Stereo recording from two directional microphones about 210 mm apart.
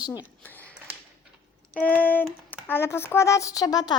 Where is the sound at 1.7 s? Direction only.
5° left (ahead or behind).